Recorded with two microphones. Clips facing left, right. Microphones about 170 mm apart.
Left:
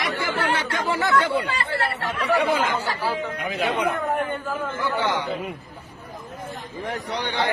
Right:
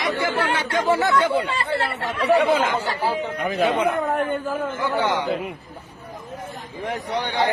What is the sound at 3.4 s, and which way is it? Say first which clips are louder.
Speech: right 4 dB; 50° right (ahead or behind).